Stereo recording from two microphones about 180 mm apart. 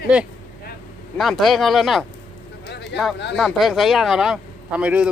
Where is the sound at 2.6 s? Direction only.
70° left (ahead or behind).